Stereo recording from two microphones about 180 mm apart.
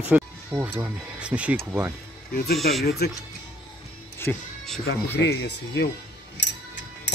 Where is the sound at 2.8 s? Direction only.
65° left (ahead or behind).